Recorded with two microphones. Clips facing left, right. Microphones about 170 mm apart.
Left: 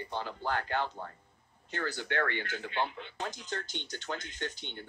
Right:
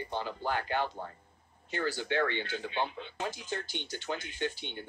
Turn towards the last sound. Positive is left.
turn(degrees=-15)  # may be behind; listen again after turning